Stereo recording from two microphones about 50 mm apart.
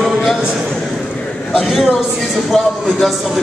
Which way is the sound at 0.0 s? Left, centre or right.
Centre.